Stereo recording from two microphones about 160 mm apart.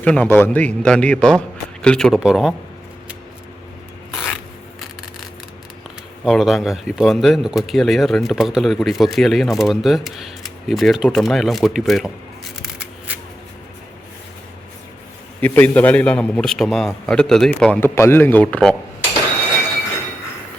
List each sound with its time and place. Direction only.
0.0 s a man's voice: 10° left (ahead or behind)
4.1 s a sound: centre (ahead or behind)
6.2 s a man's voice: centre (ahead or behind)
15.4 s a man's voice: 10° left (ahead or behind)